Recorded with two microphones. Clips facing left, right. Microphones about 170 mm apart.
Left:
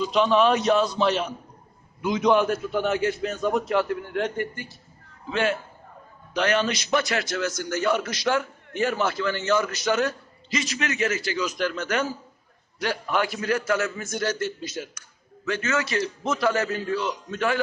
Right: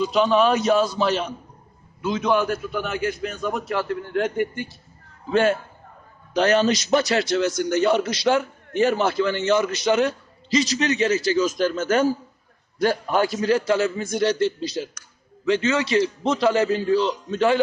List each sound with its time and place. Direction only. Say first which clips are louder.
0.0 s a man's voice: right 2 dB; 5° right (ahead or behind)
2.0 s a man's voice: left 1 dB; 15° left (ahead or behind)
5.3 s a man's voice: right 6 dB; 45° right (ahead or behind); by 10.6 s 25° right (ahead or behind)
10.6 s a man's voice: right 4 dB; 35° right (ahead or behind)
13.4 s a man's voice: right 5 dB; 30° right (ahead or behind)
15.4 s a man's voice: right 6 dB; 20° right (ahead or behind)